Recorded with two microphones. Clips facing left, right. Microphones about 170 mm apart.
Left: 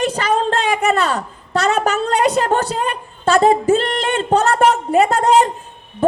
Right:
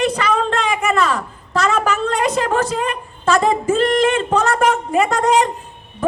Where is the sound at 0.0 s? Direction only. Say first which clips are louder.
Even; 35° left (ahead or behind).